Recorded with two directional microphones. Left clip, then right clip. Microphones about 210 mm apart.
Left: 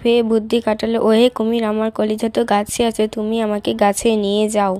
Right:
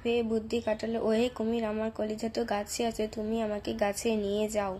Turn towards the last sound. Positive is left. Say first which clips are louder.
# left 13 dB
turn(degrees=40)  # may be behind; listen again after turning